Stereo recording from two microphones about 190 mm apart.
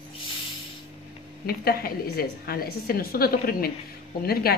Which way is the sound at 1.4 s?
50° left (ahead or behind).